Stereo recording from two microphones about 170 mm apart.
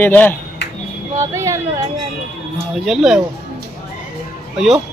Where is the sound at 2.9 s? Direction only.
5° right (ahead or behind).